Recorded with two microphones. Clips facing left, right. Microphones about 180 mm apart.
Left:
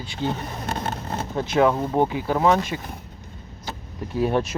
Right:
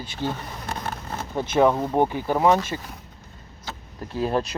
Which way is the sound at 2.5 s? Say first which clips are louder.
Left 1 dB; 20° left (ahead or behind).